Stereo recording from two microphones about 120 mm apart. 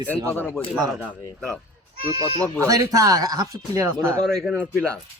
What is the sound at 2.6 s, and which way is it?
Speech, 25° right (ahead or behind).